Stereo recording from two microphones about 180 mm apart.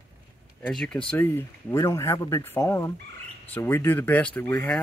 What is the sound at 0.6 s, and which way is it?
Speech, 5° left (ahead or behind).